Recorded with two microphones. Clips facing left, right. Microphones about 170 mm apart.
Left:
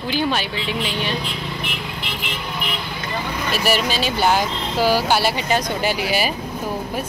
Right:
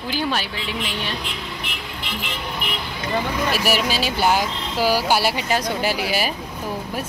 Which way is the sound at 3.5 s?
10° right (ahead or behind).